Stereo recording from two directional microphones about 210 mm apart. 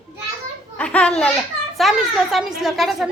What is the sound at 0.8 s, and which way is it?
A woman's voice, 5° left (ahead or behind).